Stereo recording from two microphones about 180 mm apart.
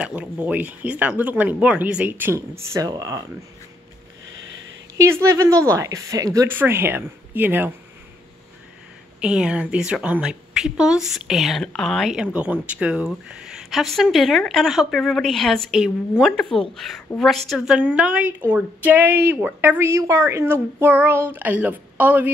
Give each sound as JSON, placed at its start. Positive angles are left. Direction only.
{"t": 0.0, "sound": "speech", "side_deg": -5}
{"t": 4.3, "sound": "sniff", "side_deg": -90}
{"t": 4.9, "sound": "speech", "side_deg": -15}
{"t": 9.2, "sound": "a woman's voice", "side_deg": -5}